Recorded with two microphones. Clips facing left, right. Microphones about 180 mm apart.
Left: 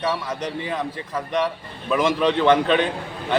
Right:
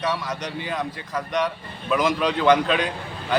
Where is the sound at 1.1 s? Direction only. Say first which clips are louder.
Left 1 dB; 5° left (ahead or behind).